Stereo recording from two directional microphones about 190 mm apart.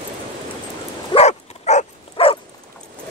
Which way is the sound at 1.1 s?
35° left (ahead or behind).